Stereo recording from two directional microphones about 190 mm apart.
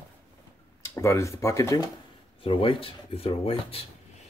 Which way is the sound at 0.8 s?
15° left (ahead or behind).